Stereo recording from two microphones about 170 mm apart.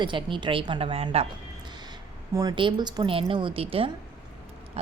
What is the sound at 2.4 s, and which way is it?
A woman's voice, 25° right (ahead or behind).